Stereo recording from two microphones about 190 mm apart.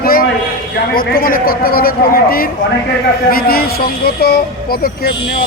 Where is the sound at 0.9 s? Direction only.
50° left (ahead or behind).